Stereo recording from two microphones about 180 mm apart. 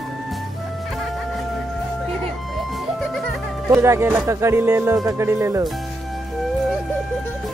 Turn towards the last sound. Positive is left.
turn(degrees=-15)  # may be behind; listen again after turning